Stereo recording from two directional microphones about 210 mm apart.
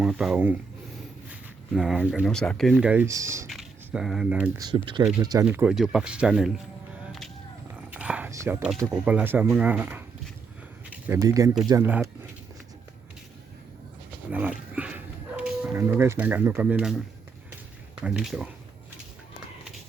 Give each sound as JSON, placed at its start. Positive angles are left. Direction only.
{"t": 0.0, "sound": "speech", "side_deg": 0}
{"t": 3.5, "sound": "speech", "side_deg": 0}
{"t": 5.2, "sound": "speech", "side_deg": -20}
{"t": 5.5, "sound": "speech", "side_deg": -5}
{"t": 7.8, "sound": "whispering", "side_deg": -5}
{"t": 8.8, "sound": "speech", "side_deg": -10}
{"t": 14.3, "sound": "dog", "side_deg": -5}
{"t": 18.0, "sound": "speech", "side_deg": -5}